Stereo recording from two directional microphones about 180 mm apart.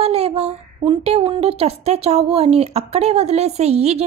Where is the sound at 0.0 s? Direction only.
35° right (ahead or behind).